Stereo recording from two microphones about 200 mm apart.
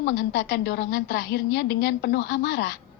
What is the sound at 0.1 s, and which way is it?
A woman's voice, 65° left (ahead or behind).